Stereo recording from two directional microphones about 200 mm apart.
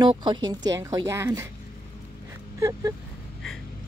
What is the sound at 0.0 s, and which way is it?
Speech, 20° right (ahead or behind).